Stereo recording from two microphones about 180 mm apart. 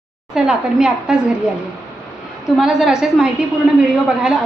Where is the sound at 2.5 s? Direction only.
Centre (ahead or behind).